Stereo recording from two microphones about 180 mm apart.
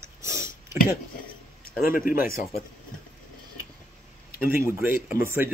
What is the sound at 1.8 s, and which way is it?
Speech, 50° left (ahead or behind).